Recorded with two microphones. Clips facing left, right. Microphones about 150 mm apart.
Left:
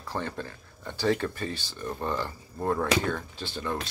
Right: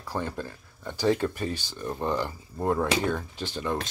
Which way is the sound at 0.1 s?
10° right (ahead or behind).